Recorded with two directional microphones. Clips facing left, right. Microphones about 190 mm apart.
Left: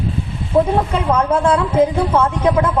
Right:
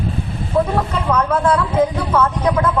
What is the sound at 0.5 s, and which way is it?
A woman's voice, 25° left (ahead or behind).